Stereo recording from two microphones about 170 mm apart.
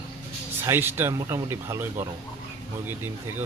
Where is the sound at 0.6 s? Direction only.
15° right (ahead or behind).